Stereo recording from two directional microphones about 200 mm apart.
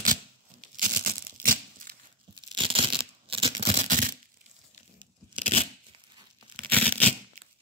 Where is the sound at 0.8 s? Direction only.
50° right (ahead or behind).